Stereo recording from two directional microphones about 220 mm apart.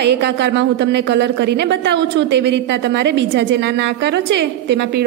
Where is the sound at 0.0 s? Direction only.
50° right (ahead or behind).